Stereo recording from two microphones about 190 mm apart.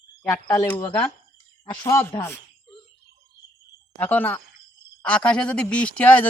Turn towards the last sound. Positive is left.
turn(degrees=10)  # may be behind; listen again after turning